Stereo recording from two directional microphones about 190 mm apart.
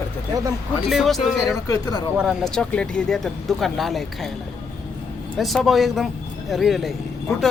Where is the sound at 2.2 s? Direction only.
Centre (ahead or behind).